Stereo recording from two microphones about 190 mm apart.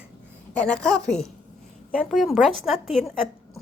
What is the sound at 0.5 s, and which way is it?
Speech, 5° left (ahead or behind).